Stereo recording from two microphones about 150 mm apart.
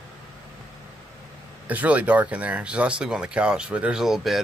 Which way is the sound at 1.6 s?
10° right (ahead or behind).